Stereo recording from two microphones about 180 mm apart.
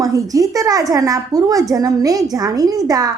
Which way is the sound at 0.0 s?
20° right (ahead or behind).